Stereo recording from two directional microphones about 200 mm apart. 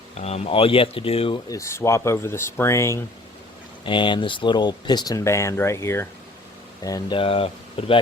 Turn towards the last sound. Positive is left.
turn(degrees=30)  # may be behind; listen again after turning